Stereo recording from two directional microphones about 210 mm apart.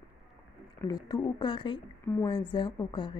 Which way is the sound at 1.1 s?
20° left (ahead or behind).